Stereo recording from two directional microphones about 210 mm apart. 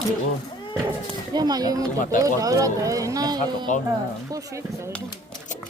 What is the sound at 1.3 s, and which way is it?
Speech, 20° right (ahead or behind).